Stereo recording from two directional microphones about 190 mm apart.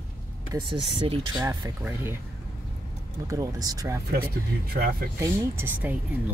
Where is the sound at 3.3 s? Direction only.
20° right (ahead or behind).